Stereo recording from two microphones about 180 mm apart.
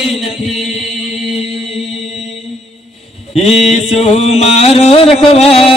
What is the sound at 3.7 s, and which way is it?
Music, 35° left (ahead or behind).